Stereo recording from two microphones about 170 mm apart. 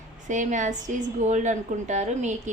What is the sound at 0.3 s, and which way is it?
A woman's voice, 45° right (ahead or behind).